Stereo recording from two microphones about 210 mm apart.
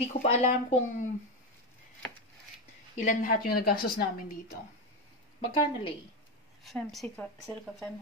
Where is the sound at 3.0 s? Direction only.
40° left (ahead or behind).